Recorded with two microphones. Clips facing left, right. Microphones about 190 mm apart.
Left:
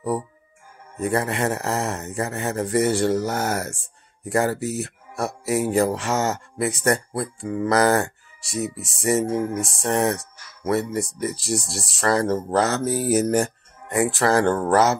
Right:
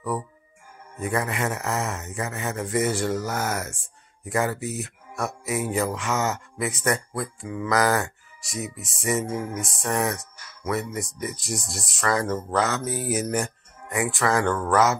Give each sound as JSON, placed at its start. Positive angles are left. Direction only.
{"t": 1.0, "sound": "speech", "side_deg": 35}
{"t": 7.4, "sound": "speech", "side_deg": 45}
{"t": 7.7, "sound": "speech", "side_deg": 30}